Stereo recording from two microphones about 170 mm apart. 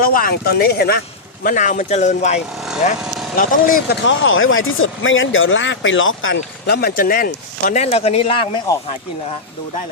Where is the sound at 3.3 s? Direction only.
55° left (ahead or behind).